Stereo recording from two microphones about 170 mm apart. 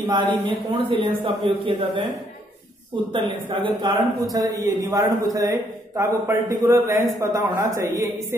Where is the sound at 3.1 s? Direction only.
30° right (ahead or behind).